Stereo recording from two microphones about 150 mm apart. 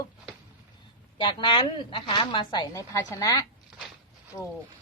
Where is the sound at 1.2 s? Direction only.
30° left (ahead or behind).